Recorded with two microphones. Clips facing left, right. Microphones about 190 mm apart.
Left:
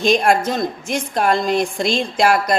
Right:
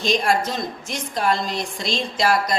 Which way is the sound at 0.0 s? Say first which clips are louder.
Left 5 dB; 55° left (ahead or behind).